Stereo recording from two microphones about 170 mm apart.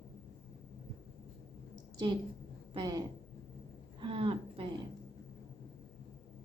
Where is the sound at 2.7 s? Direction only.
25° right (ahead or behind).